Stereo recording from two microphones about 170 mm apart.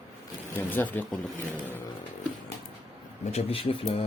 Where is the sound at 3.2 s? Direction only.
35° left (ahead or behind).